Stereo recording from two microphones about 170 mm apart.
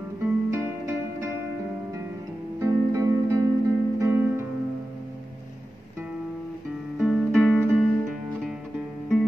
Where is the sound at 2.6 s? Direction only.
20° right (ahead or behind).